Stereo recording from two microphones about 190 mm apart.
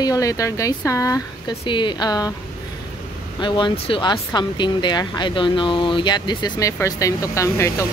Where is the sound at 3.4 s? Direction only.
25° left (ahead or behind).